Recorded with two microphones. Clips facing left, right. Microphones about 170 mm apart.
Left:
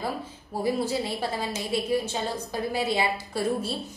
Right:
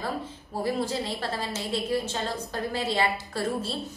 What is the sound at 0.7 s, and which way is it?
A woman's voice, 10° left (ahead or behind).